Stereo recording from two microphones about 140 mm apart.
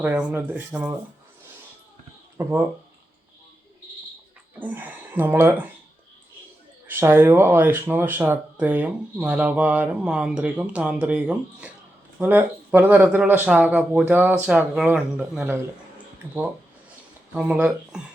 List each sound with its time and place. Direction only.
0.0 s speech: 10° right (ahead or behind)
2.4 s speech: 20° right (ahead or behind)
4.6 s speech: 15° right (ahead or behind)
6.8 s speech: 15° right (ahead or behind)